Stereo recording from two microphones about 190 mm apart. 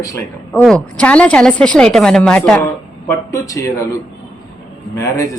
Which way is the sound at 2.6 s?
15° left (ahead or behind).